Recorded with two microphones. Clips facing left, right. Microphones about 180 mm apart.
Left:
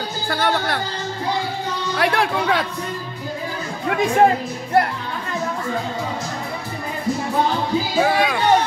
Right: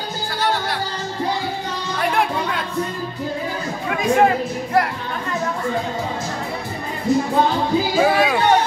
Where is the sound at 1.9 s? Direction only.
80° left.